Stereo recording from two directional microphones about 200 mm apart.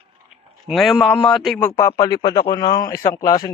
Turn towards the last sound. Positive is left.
turn(degrees=15)  # may be behind; listen again after turning